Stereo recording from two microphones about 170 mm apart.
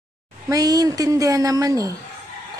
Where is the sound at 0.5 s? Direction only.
20° right (ahead or behind).